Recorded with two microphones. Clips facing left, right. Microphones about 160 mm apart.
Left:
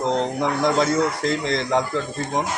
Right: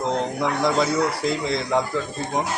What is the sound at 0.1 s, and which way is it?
Speech, centre (ahead or behind).